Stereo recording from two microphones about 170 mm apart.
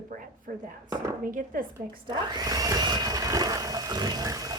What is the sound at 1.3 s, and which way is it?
Speech, 55° right (ahead or behind).